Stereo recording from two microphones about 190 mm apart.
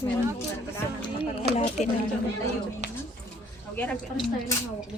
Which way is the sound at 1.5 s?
35° left (ahead or behind).